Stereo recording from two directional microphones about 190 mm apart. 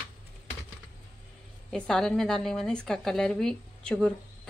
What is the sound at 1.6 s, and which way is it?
A woman's voice, centre (ahead or behind).